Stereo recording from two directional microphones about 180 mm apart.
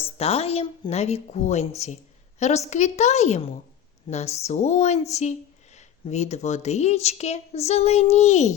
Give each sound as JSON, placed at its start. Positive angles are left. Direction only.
{"t": 0.0, "sound": "speech", "side_deg": 35}